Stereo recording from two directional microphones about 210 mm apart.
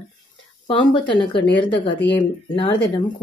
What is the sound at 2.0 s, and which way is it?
Speech, 10° left (ahead or behind).